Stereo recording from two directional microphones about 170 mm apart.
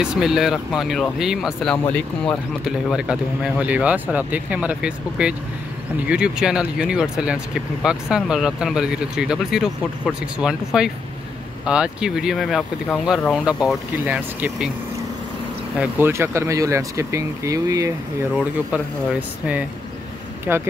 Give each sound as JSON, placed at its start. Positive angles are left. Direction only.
{"t": 0.0, "sound": "speech", "side_deg": -5}
{"t": 15.8, "sound": "speech", "side_deg": -15}
{"t": 18.3, "sound": "speech", "side_deg": -5}